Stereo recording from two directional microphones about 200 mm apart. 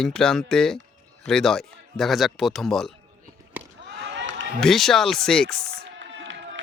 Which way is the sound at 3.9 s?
65° right (ahead or behind).